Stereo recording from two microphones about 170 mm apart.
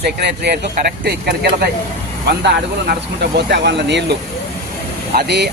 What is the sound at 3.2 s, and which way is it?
Speech, 80° right.